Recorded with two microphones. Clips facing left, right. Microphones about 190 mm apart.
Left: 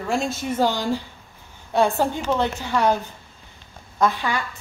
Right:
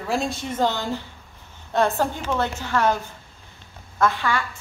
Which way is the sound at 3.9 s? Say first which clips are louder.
Even; 15° left (ahead or behind).